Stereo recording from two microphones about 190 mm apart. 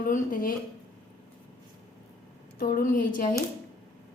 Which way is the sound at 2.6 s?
50° left (ahead or behind).